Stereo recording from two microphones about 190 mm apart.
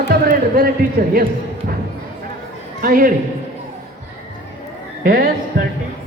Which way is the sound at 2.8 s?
50° right (ahead or behind).